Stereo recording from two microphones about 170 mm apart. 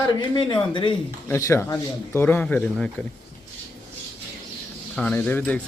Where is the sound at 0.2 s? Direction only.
25° left (ahead or behind).